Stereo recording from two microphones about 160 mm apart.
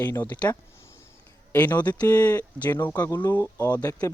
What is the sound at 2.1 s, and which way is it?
Speech, 10° left (ahead or behind).